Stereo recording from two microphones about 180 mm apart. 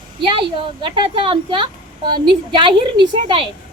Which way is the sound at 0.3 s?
25° right (ahead or behind).